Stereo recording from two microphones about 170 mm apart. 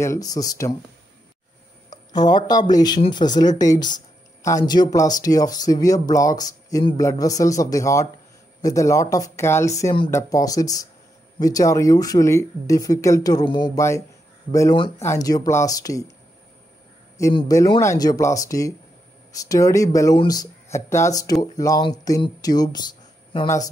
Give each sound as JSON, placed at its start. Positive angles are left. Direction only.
{"t": 0.0, "sound": "speech", "side_deg": 20}
{"t": 1.9, "sound": "speech", "side_deg": 25}
{"t": 17.4, "sound": "speech", "side_deg": 25}